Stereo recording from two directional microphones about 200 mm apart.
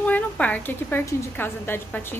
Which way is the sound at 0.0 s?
5° left (ahead or behind).